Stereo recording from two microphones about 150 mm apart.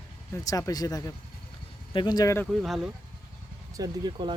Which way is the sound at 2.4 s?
Centre (ahead or behind).